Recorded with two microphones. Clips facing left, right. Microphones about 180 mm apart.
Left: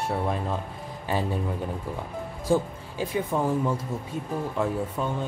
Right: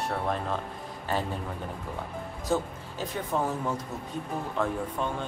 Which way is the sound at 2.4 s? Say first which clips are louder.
Left 5 dB; 10° left (ahead or behind).